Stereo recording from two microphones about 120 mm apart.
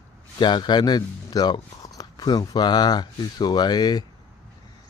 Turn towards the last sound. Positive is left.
turn(degrees=35)  # may be behind; listen again after turning